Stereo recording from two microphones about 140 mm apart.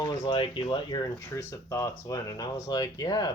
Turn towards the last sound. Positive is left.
turn(degrees=30)  # may be behind; listen again after turning